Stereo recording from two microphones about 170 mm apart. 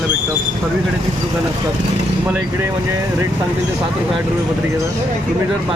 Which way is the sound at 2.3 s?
15° right (ahead or behind).